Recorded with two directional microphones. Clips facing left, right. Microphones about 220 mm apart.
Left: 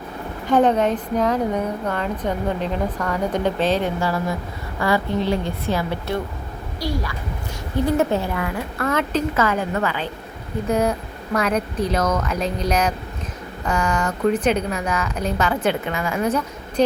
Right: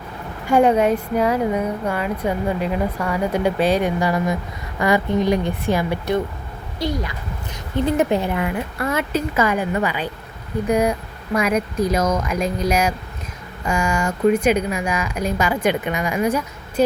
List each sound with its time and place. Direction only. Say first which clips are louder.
0.4 s a woman's voice: right 2 dB; 10° right (ahead or behind)